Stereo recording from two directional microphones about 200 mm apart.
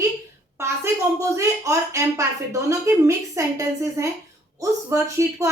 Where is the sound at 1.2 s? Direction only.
15° right (ahead or behind).